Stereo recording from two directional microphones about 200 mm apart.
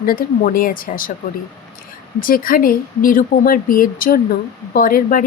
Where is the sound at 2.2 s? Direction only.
45° left (ahead or behind).